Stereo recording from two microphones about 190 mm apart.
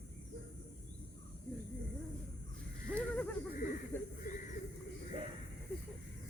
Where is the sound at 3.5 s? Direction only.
45° left (ahead or behind).